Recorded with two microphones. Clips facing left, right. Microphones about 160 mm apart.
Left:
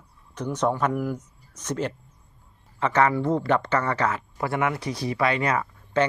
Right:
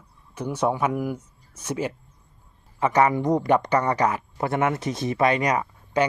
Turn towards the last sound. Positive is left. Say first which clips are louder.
# even
turn(degrees=-15)  # may be behind; listen again after turning